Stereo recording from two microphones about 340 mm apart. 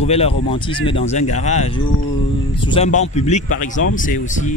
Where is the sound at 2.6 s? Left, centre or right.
Centre.